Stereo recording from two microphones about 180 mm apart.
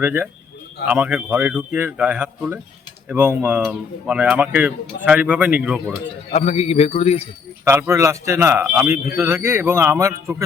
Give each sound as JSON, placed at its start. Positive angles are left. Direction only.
{"t": 0.0, "sound": "speech", "side_deg": -10}
{"t": 6.3, "sound": "a man's voice", "side_deg": 40}
{"t": 7.6, "sound": "speech", "side_deg": -15}